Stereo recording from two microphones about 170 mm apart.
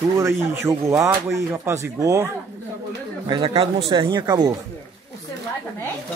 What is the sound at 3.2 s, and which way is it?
Speech, 30° right (ahead or behind).